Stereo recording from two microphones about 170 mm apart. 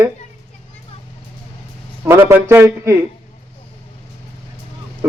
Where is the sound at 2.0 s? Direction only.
15° right (ahead or behind).